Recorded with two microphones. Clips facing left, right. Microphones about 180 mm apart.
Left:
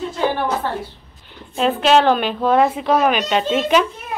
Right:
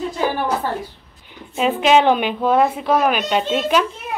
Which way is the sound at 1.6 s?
10° right (ahead or behind).